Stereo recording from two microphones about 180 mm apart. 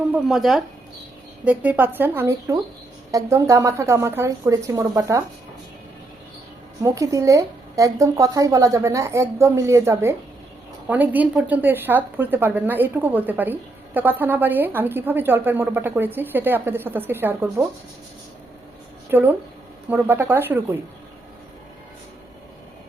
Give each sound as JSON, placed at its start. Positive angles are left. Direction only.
{"t": 0.1, "sound": "a woman's voice", "side_deg": 0}
{"t": 6.8, "sound": "a woman's voice", "side_deg": -20}
{"t": 19.1, "sound": "a woman's voice", "side_deg": -10}